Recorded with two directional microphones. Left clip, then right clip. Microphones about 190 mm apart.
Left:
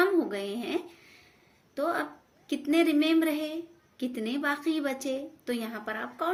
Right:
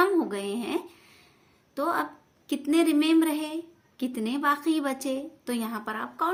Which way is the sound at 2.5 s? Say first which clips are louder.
Right 2 dB; 50° right (ahead or behind).